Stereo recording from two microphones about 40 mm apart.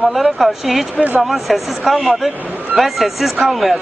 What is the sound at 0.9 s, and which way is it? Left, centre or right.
Speech, right.